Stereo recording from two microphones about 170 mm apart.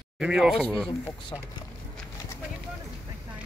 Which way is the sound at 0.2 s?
5° right (ahead or behind).